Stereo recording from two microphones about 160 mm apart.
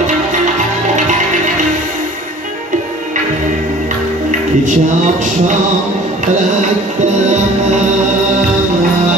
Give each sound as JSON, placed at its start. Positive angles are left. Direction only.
{"t": 0.9, "sound": "music", "side_deg": -50}
{"t": 4.3, "sound": "music", "side_deg": -50}